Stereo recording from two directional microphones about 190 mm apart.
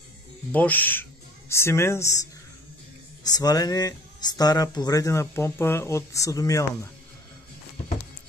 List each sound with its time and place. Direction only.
0.5 s speech: 10° left (ahead or behind)
3.3 s speech: 20° left (ahead or behind)